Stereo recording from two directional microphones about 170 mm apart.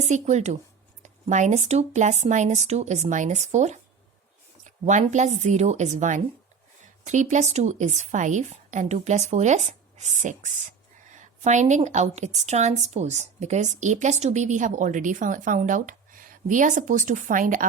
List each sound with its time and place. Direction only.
0.0 s a woman's voice: 40° right (ahead or behind)
4.9 s a woman's voice: 45° right (ahead or behind)